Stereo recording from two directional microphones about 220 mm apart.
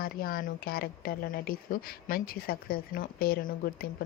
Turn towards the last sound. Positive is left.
turn(degrees=45)  # may be behind; listen again after turning